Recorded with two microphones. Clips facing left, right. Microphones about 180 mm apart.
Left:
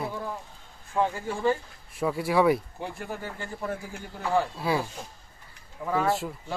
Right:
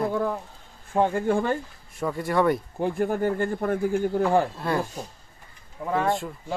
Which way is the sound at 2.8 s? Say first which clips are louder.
Right 11 dB; 50° right (ahead or behind).